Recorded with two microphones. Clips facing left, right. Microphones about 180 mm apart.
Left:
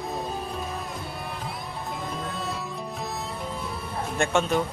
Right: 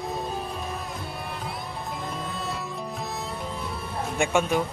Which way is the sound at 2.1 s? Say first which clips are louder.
Left 1 dB; centre (ahead or behind).